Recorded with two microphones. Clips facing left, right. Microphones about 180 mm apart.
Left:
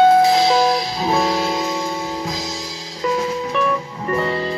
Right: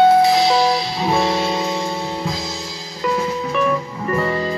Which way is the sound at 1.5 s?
25° right (ahead or behind).